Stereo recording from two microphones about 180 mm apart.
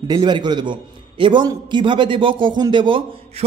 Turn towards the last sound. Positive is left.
turn(degrees=-30)  # may be behind; listen again after turning